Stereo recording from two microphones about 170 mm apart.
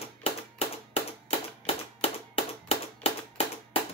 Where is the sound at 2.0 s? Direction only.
35° left (ahead or behind).